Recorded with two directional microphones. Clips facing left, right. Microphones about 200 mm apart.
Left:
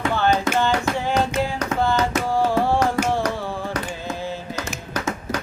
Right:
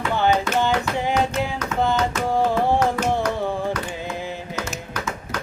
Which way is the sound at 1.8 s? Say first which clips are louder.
Even; 20° right (ahead or behind).